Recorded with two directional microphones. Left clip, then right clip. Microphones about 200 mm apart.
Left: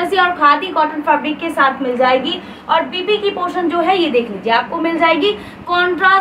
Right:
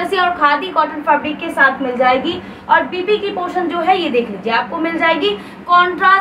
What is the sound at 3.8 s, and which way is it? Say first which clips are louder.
A woman's voice: right 2 dB; centre (ahead or behind).